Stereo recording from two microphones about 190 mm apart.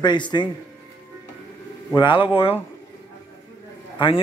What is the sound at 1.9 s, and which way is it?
Speech, 25° left (ahead or behind).